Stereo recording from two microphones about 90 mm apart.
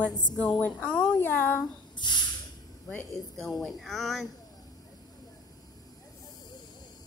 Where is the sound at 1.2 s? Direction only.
25° left (ahead or behind).